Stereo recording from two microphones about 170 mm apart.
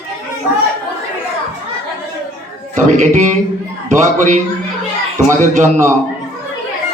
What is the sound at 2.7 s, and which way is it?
A man's voice, 45° right (ahead or behind).